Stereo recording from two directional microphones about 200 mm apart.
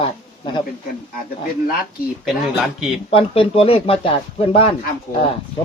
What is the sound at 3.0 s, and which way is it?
Speech, 30° left (ahead or behind).